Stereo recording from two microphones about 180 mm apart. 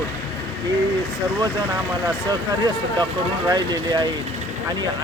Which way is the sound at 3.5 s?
25° right (ahead or behind).